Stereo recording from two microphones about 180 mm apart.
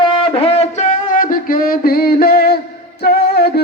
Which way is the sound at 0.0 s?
30° left (ahead or behind).